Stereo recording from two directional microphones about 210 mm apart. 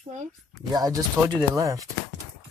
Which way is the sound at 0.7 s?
15° right (ahead or behind).